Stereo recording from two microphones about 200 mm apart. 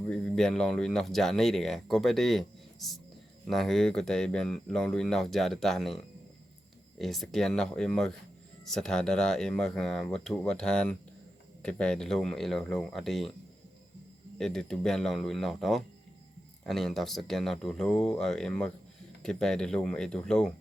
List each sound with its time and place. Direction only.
0.1 s speech: 5° left (ahead or behind)
7.0 s speech: centre (ahead or behind)
14.3 s speech: 5° left (ahead or behind)